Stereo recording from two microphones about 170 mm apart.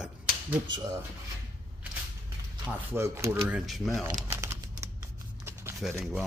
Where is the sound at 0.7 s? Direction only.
20° right (ahead or behind).